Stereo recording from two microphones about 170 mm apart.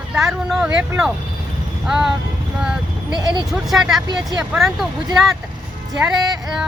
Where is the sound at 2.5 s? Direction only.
5° right (ahead or behind).